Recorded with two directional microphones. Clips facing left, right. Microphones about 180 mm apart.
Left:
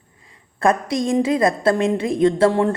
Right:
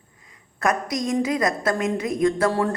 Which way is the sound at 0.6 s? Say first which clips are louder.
Left 5 dB; 30° left (ahead or behind).